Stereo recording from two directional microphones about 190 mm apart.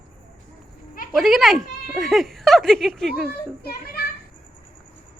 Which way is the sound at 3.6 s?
55° left (ahead or behind).